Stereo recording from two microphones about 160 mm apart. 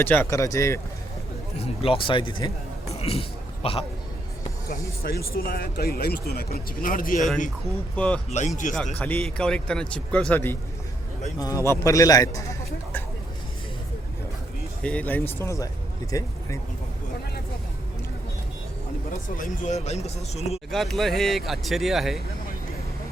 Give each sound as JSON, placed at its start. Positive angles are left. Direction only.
{"t": 0.0, "sound": "a man's voice", "side_deg": 15}
{"t": 1.5, "sound": "speech", "side_deg": 35}
{"t": 2.9, "sound": "a sound", "side_deg": 40}
{"t": 4.7, "sound": "speech", "side_deg": 70}
{"t": 7.9, "sound": "speech", "side_deg": 10}
{"t": 8.3, "sound": "speech", "side_deg": 45}
{"t": 8.7, "sound": "a man's voice", "side_deg": 5}
{"t": 14.8, "sound": "a man's voice", "side_deg": 10}
{"t": 19.4, "sound": "speech", "side_deg": 45}
{"t": 20.7, "sound": "speech", "side_deg": 0}